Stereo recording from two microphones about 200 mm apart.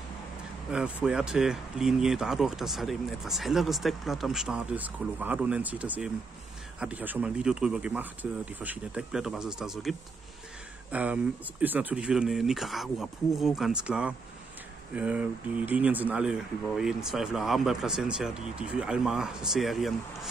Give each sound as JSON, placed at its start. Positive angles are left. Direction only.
{"t": 0.7, "sound": "speech", "side_deg": -5}